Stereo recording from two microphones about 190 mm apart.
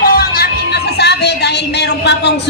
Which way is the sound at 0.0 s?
55° left (ahead or behind).